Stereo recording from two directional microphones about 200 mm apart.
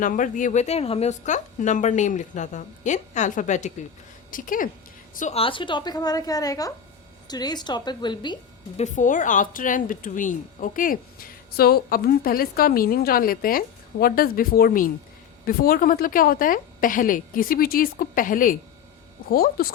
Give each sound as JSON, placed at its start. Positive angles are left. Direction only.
{"t": 0.0, "sound": "a woman's voice", "side_deg": 40}
{"t": 8.8, "sound": "a woman's voice", "side_deg": 40}